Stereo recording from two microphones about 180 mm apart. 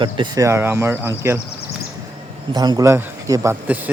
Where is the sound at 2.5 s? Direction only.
20° right (ahead or behind).